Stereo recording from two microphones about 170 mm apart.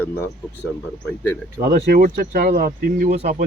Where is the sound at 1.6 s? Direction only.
60° right (ahead or behind).